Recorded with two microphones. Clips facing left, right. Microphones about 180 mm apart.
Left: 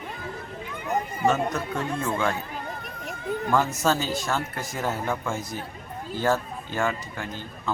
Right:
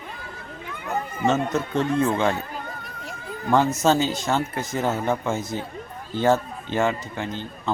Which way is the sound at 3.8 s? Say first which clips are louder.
Right 4 dB; 20° right (ahead or behind).